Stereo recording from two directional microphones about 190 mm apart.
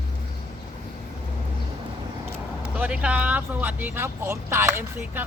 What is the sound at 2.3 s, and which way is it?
Speech, 5° right (ahead or behind).